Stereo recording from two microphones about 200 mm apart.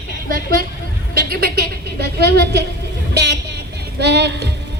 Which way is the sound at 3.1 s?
55° right (ahead or behind).